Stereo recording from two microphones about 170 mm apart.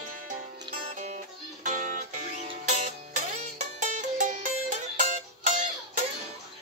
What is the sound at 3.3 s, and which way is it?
Music, 45° right (ahead or behind).